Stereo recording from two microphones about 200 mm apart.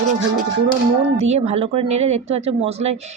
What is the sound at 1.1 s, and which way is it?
Speech, 30° right (ahead or behind).